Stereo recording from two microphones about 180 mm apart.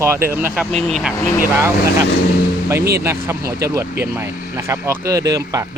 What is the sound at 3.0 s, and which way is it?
Speech, 15° right (ahead or behind).